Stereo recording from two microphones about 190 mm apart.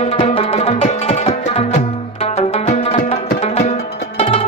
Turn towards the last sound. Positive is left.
turn(degrees=30)  # may be behind; listen again after turning